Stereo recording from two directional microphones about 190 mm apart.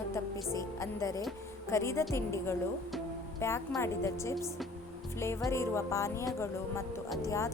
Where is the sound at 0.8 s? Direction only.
15° left (ahead or behind).